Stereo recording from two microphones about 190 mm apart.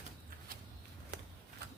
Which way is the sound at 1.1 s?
65° right (ahead or behind).